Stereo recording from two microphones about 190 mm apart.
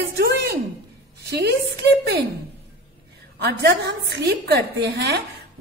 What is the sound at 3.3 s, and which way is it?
A woman's voice, 60° right (ahead or behind).